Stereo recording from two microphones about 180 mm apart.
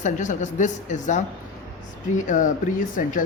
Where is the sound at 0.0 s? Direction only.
45° left (ahead or behind).